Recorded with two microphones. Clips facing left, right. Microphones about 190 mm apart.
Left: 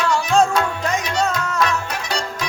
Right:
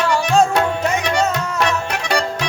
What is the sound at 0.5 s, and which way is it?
Music, 65° right (ahead or behind).